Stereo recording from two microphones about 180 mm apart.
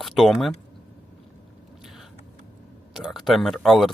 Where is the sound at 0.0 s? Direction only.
Centre (ahead or behind).